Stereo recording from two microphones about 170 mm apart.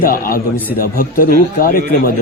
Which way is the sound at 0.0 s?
60° left (ahead or behind).